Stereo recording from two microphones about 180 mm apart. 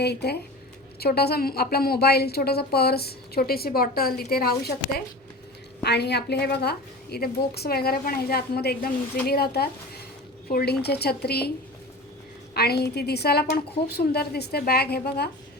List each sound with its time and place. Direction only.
0.0 s a woman's voice: 65° left (ahead or behind)
12.5 s a woman's voice: 60° left (ahead or behind)